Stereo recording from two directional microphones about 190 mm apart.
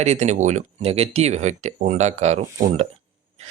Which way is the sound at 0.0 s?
35° right (ahead or behind).